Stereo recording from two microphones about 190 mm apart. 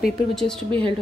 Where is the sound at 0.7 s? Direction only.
25° right (ahead or behind).